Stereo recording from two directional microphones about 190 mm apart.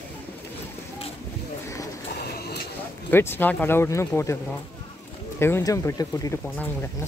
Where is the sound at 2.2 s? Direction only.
55° left (ahead or behind).